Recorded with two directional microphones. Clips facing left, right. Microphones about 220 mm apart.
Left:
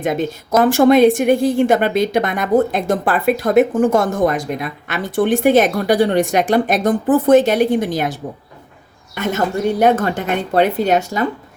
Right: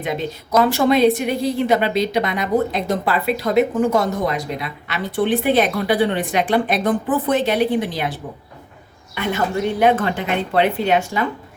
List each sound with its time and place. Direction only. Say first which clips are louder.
0.0 s a woman's voice: left 5 dB; 50° left (ahead or behind)